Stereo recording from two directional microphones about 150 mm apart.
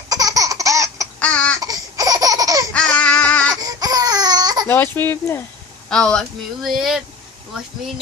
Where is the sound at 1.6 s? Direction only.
25° right (ahead or behind).